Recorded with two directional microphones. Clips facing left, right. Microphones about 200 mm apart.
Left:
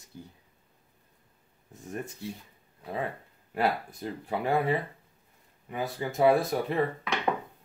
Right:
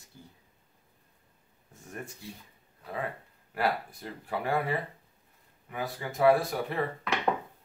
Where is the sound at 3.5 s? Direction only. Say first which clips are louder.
Left 2 dB; 25° left (ahead or behind).